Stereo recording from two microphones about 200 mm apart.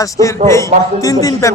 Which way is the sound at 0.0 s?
15° left (ahead or behind).